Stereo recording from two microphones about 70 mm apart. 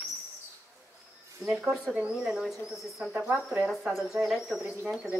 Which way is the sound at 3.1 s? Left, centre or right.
Right.